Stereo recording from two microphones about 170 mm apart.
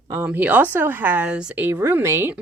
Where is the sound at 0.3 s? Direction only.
10° right (ahead or behind).